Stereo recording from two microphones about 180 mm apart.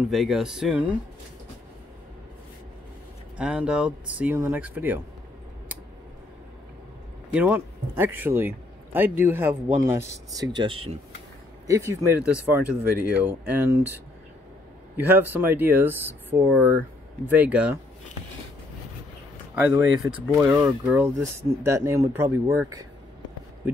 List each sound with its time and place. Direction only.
0.1 s speech: centre (ahead or behind)
3.3 s a man's voice: 5° right (ahead or behind)
7.3 s a man's voice: 10° right (ahead or behind); by 11.0 s 30° right (ahead or behind)
11.6 s a man's voice: 15° right (ahead or behind)
20.3 s a man's voice: 15° right (ahead or behind)